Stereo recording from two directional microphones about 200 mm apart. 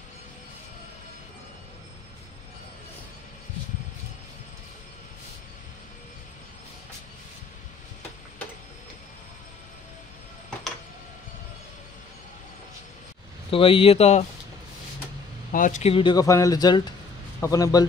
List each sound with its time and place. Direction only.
13.5 s speech: 25° left (ahead or behind)
15.5 s speech: 40° left (ahead or behind); by 17.8 s 15° left (ahead or behind)